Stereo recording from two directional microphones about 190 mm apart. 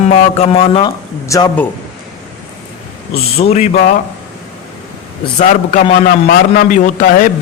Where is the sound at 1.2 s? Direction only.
15° left (ahead or behind).